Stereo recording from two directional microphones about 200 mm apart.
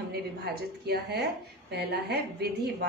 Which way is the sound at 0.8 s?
55° right (ahead or behind).